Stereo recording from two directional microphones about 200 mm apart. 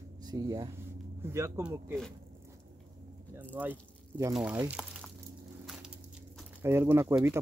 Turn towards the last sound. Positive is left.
turn(degrees=-10)  # may be behind; listen again after turning